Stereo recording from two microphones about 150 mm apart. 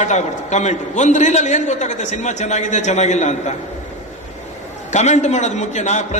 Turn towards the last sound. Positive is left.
turn(degrees=50)  # may be behind; listen again after turning